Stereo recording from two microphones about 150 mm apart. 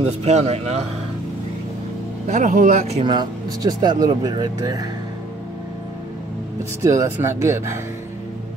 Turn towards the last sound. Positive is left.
turn(degrees=-15)  # may be behind; listen again after turning